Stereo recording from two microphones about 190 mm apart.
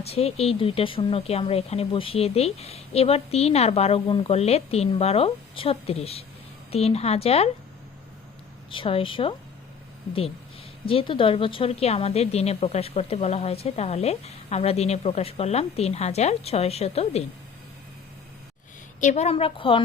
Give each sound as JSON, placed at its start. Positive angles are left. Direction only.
{"t": 0.0, "sound": "a woman's voice", "side_deg": 35}
{"t": 8.7, "sound": "a woman's voice", "side_deg": 30}
{"t": 10.8, "sound": "a woman's voice", "side_deg": 30}
{"t": 18.9, "sound": "a woman's voice", "side_deg": 40}